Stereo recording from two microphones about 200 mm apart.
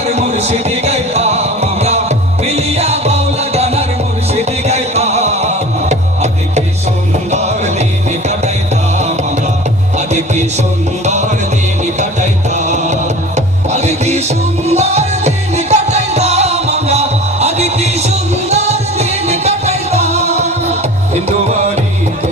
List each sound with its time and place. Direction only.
0.0 s music: 35° right (ahead or behind)
7.3 s music: 35° right (ahead or behind)
10.1 s music: 35° right (ahead or behind)